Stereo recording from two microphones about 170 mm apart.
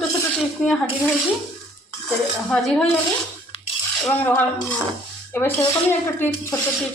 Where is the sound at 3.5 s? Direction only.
35° left (ahead or behind).